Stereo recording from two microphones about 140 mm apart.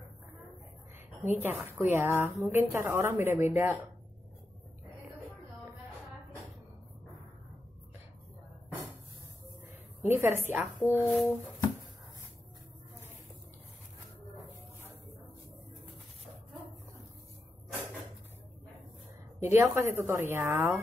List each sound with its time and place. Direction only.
1.2 s a woman's voice: 15° right (ahead or behind)
10.0 s a woman's voice: 15° right (ahead or behind)
10.5 s speech: 5° right (ahead or behind)
19.4 s a woman's voice: 15° right (ahead or behind)